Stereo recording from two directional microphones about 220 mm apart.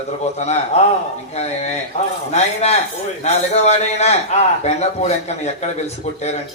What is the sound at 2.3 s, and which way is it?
A man's voice, 30° left (ahead or behind).